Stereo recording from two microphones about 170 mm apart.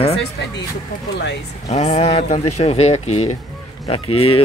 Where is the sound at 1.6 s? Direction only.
40° left (ahead or behind).